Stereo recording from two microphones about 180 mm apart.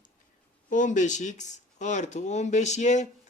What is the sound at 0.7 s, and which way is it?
Speech, 45° left (ahead or behind).